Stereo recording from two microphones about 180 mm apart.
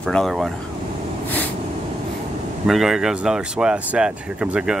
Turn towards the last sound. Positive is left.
turn(degrees=-5)  # may be behind; listen again after turning